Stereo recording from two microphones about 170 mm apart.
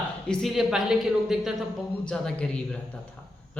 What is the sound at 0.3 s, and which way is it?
A man's voice, centre (ahead or behind).